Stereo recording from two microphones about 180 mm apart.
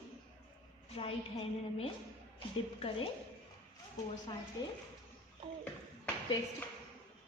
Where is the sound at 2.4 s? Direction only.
30° left (ahead or behind).